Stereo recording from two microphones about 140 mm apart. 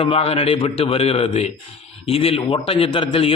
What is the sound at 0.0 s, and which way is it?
A man's voice, 45° left (ahead or behind).